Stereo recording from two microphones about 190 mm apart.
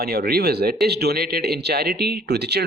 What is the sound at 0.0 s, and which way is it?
Speech, 55° right (ahead or behind).